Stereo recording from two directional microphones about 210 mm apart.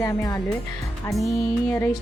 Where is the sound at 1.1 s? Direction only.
Centre (ahead or behind).